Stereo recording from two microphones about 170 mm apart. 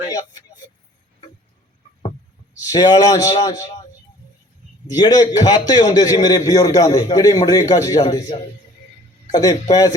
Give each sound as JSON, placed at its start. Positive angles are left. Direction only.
{"t": 0.1, "sound": "speech", "side_deg": 25}
{"t": 2.6, "sound": "a man's voice", "side_deg": 25}
{"t": 4.9, "sound": "a man's voice", "side_deg": 25}